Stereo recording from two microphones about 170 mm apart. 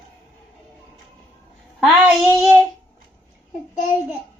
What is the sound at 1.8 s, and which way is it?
Speech, centre (ahead or behind).